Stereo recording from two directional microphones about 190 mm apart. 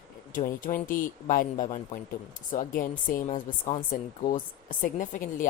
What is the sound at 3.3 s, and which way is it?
Speech, 30° left (ahead or behind).